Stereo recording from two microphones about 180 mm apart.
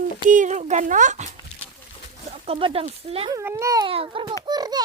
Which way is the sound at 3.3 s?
15° right (ahead or behind).